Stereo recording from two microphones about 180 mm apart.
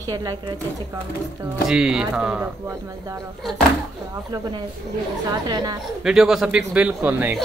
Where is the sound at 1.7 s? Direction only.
5° right (ahead or behind).